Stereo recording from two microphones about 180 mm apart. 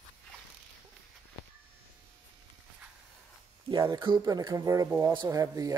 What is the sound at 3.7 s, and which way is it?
Speech, 25° right (ahead or behind).